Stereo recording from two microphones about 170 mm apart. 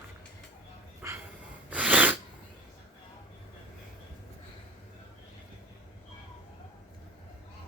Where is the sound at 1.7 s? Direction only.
10° right (ahead or behind).